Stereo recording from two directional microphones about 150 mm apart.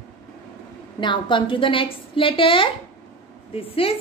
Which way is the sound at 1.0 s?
30° left (ahead or behind).